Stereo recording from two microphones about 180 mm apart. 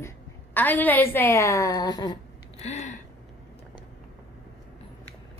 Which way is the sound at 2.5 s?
35° left (ahead or behind).